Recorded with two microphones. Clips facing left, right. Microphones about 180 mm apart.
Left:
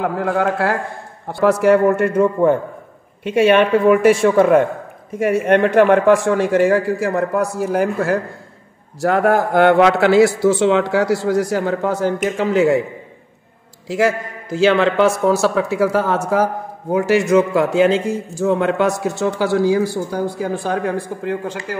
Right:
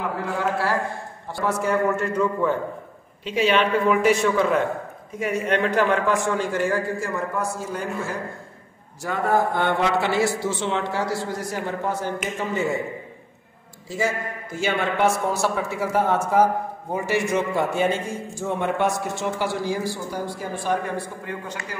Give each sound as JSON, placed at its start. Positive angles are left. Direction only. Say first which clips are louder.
{"t": 0.0, "sound": "a man's voice", "louder": "left 7 dB", "side_deg": 60}
{"t": 1.2, "sound": "a man's voice", "louder": "left 10 dB", "side_deg": 80}
{"t": 13.8, "sound": "a man's voice", "louder": "left 8 dB", "side_deg": 90}
{"t": 20.7, "sound": "speech", "louder": "left 5 dB", "side_deg": 80}